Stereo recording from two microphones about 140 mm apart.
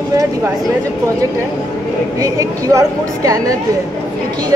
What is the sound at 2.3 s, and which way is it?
A woman's voice, 25° right (ahead or behind).